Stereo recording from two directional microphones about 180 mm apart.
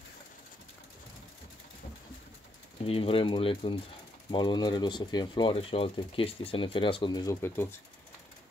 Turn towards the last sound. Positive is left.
turn(degrees=15)  # may be behind; listen again after turning